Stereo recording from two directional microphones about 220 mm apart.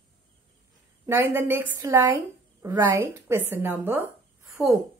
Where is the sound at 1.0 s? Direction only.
10° right (ahead or behind).